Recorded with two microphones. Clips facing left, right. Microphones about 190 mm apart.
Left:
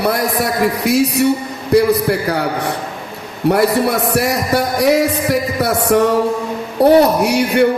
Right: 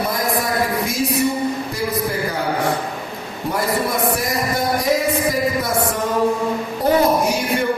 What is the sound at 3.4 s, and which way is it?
Speech, 70° left (ahead or behind).